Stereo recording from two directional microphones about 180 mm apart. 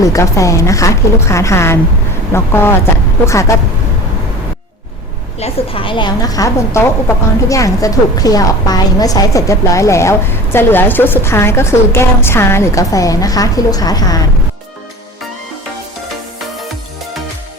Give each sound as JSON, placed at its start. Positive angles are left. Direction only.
{"t": 0.0, "sound": "a woman's voice", "side_deg": 15}
{"t": 5.4, "sound": "a woman's voice", "side_deg": 30}